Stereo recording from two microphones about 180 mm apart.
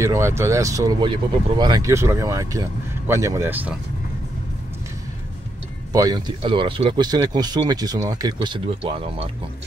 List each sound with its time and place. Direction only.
0.0 s speech: 15° right (ahead or behind)
5.9 s speech: 20° right (ahead or behind)